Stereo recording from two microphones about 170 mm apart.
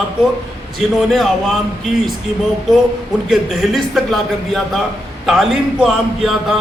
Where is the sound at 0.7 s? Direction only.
Centre (ahead or behind).